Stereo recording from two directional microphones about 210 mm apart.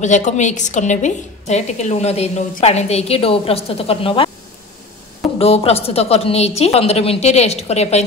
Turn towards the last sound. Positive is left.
turn(degrees=30)  # may be behind; listen again after turning